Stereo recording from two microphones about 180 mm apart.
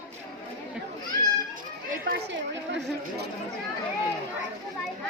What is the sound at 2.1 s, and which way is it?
Chatter, 75° right (ahead or behind).